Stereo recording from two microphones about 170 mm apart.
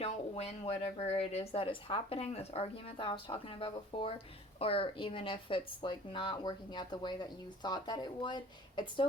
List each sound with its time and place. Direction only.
0.0 s speech: 40° left (ahead or behind)